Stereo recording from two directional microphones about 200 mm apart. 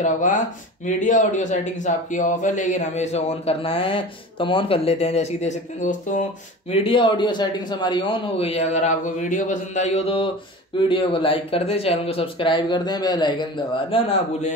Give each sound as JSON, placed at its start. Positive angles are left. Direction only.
{"t": 0.0, "sound": "speech", "side_deg": 40}
{"t": 6.7, "sound": "speech", "side_deg": 25}